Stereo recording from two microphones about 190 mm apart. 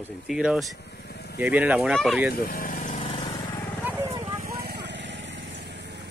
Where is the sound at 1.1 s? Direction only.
60° left (ahead or behind).